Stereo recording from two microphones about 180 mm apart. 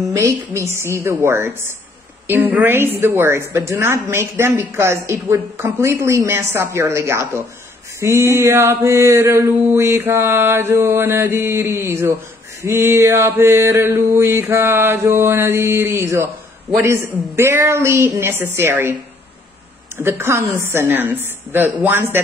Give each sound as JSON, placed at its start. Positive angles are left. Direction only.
{"t": 0.1, "sound": "a woman's voice", "side_deg": -15}
{"t": 20.0, "sound": "a woman's voice", "side_deg": -15}